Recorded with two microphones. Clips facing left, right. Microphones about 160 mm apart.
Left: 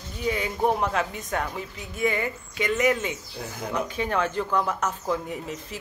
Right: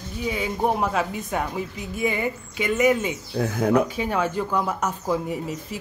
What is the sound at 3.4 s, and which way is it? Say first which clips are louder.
Speech: right 11 dB; 60° right (ahead or behind).